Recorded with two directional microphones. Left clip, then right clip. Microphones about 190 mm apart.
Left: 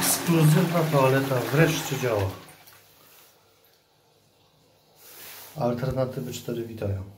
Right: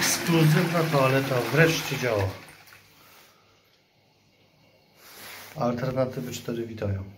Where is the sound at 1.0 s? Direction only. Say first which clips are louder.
Left 1 dB; 20° left (ahead or behind).